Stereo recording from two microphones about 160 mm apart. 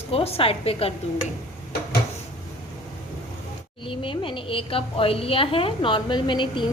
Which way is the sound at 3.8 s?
35° left (ahead or behind).